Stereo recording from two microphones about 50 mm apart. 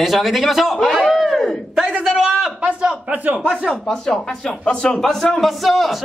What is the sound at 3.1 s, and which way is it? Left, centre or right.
Speech, right.